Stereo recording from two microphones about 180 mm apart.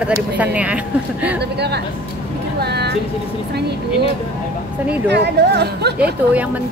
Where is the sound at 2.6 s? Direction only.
65° right (ahead or behind).